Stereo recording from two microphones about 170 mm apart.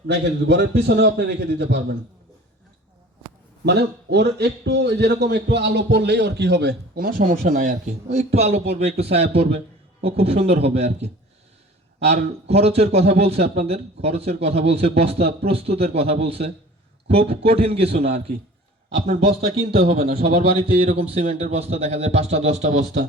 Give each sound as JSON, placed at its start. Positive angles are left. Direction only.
{"t": 0.1, "sound": "a man's voice", "side_deg": -90}
{"t": 3.7, "sound": "a man's voice", "side_deg": -80}